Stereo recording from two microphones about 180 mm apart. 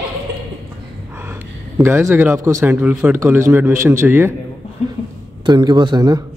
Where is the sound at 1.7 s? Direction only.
15° right (ahead or behind).